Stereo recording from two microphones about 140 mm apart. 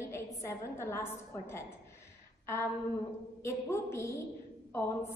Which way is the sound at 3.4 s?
20° left (ahead or behind).